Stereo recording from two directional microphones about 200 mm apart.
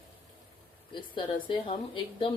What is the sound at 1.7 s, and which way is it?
Speech, 25° left (ahead or behind).